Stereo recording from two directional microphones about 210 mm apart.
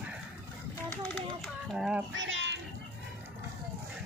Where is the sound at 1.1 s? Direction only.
Centre (ahead or behind).